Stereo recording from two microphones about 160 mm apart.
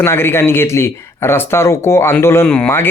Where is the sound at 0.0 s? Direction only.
15° left (ahead or behind).